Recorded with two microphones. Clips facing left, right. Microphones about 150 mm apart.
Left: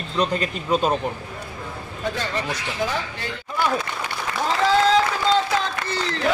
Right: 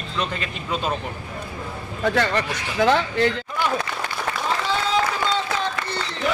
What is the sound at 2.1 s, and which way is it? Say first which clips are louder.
Speech: right 5 dB; 70° right (ahead or behind).